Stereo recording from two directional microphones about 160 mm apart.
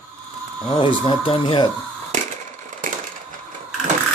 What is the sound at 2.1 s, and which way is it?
Wood, 45° right (ahead or behind).